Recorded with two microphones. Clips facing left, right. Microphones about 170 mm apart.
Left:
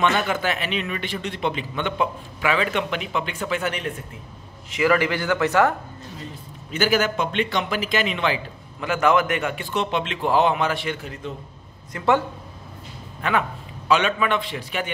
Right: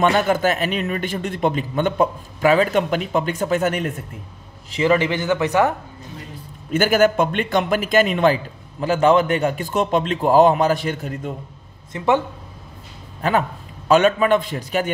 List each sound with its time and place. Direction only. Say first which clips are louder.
0.0 s a man's voice: right 5 dB; 40° right (ahead or behind)
4.6 s a man's voice: right 2 dB; 25° right (ahead or behind)
6.7 s a man's voice: right 5 dB; 50° right (ahead or behind)
11.9 s a man's voice: right 3 dB; 20° right (ahead or behind)
13.2 s a man's voice: right 4 dB; 35° right (ahead or behind)